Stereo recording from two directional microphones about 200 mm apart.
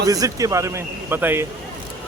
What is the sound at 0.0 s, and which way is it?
A man's voice, 15° right (ahead or behind).